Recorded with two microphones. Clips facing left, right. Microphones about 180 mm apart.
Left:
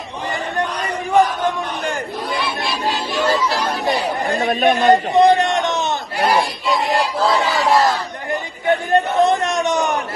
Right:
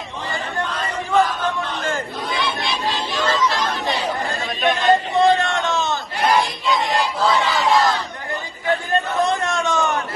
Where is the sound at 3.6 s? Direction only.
40° left (ahead or behind).